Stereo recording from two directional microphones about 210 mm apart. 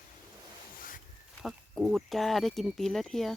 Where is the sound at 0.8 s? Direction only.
40° left (ahead or behind).